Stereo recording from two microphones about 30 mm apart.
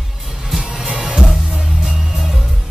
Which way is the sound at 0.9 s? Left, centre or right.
Centre.